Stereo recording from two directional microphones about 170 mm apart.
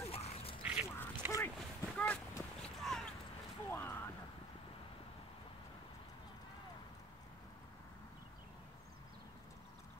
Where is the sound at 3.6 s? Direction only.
15° left (ahead or behind).